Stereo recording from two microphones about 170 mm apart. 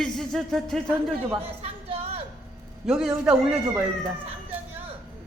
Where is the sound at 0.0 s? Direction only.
Centre (ahead or behind).